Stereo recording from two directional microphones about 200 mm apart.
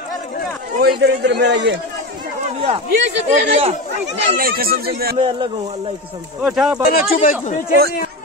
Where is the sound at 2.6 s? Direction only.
30° right (ahead or behind).